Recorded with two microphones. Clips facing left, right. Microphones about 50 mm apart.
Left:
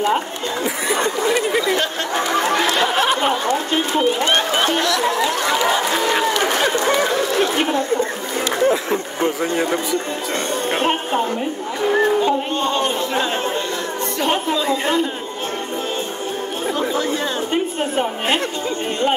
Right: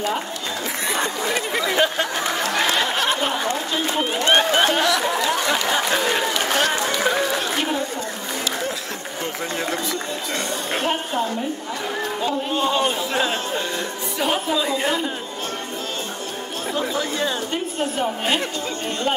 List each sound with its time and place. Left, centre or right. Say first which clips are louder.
1.2 s a man's voice: left 5 dB; centre
2.7 s a sound: left 3 dB; centre
3.2 s chatter: left 4 dB; left
4.7 s a sound: left 1 dB; centre
5.7 s a sound: left 2 dB; centre
7.1 s chatter: left 1 dB; centre
9.4 s speech: left 5 dB; centre
10.7 s a woman's voice: left 4 dB; left
12.5 s a man's voice: left 1 dB; centre
16.9 s a woman's voice: left 3 dB; left